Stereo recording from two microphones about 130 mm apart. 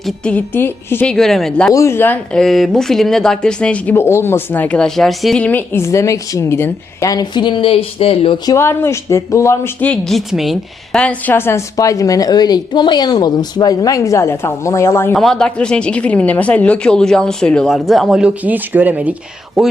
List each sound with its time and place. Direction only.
0.0 s speech: 10° left (ahead or behind)
1.1 s speech: 5° left (ahead or behind)
1.7 s a woman's voice: 20° left (ahead or behind)
2.3 s speech: centre (ahead or behind); by 8.4 s 45° left (ahead or behind)
8.4 s a woman's voice: 20° left (ahead or behind)
9.8 s speech: 5° left (ahead or behind)
11.0 s a woman's voice: 10° left (ahead or behind)
15.1 s speech: 5° left (ahead or behind)
19.6 s speech: centre (ahead or behind)